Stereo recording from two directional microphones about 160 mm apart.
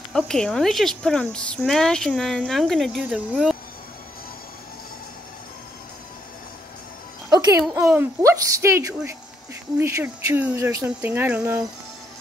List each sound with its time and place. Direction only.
0.1 s speech: 5° left (ahead or behind)
7.7 s speech: 15° right (ahead or behind)